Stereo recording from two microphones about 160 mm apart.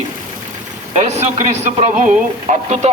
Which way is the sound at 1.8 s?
50° right (ahead or behind).